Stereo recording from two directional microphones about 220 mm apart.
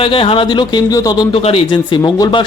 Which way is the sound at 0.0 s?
25° left (ahead or behind).